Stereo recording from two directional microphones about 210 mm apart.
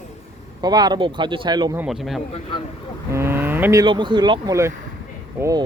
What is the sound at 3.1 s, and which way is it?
Speech, 10° right (ahead or behind).